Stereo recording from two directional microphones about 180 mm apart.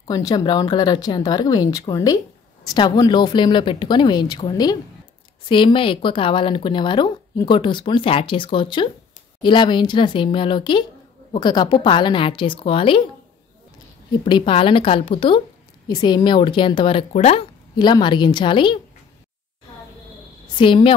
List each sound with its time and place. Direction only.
0.0 s speech: 20° left (ahead or behind)
14.2 s speech: 30° left (ahead or behind)
17.7 s speech: 25° left (ahead or behind)
20.5 s speech: 30° left (ahead or behind)